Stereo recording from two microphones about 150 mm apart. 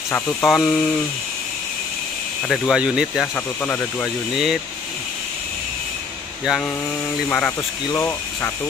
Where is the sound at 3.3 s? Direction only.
10° left (ahead or behind).